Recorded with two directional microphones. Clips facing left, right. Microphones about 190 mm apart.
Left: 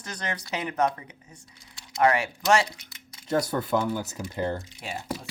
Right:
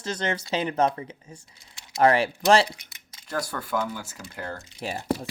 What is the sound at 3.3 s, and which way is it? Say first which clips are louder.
Speech: left 5 dB; 20° left (ahead or behind).